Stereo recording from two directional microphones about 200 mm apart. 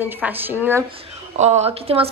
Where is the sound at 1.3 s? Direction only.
35° right (ahead or behind).